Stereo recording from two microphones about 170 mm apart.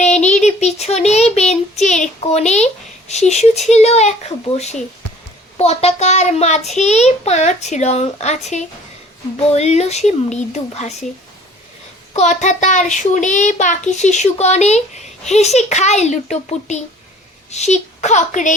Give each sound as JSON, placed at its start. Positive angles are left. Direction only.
{"t": 0.0, "sound": "a child's voice", "side_deg": 45}
{"t": 12.1, "sound": "a child's voice", "side_deg": 45}